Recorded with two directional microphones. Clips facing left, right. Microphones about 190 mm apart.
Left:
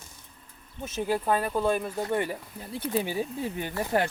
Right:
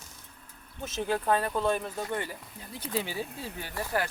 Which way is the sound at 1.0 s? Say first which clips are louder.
Left 1 dB; 10° left (ahead or behind).